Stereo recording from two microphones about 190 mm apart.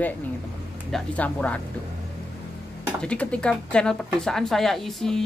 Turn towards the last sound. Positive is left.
turn(degrees=0)  # may be behind; listen again after turning